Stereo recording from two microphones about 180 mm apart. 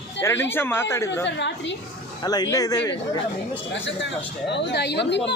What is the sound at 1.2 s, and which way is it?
Speech, 80° left.